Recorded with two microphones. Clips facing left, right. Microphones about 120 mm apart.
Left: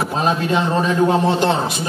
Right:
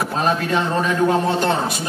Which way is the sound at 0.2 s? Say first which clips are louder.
Left 1 dB; 15° left (ahead or behind).